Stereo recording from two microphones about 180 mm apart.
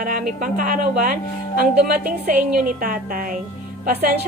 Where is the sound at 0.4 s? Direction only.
50° right (ahead or behind).